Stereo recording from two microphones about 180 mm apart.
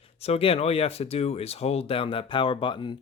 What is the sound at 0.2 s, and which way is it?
Speech, 35° left (ahead or behind).